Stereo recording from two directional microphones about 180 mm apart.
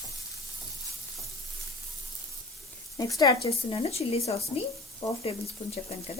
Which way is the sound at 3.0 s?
20° left (ahead or behind).